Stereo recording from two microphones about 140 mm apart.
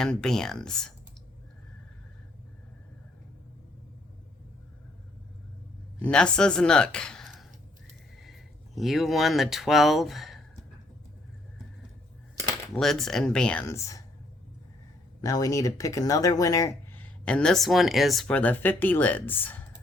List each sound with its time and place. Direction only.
0.0 s speech: 5° left (ahead or behind)
6.0 s speech: 5° left (ahead or behind)
12.7 s speech: centre (ahead or behind)
13.7 s speech: 20° left (ahead or behind)
15.2 s speech: 25° left (ahead or behind)
17.0 s speech: 10° left (ahead or behind)